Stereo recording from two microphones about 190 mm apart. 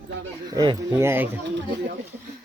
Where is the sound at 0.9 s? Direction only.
10° right (ahead or behind).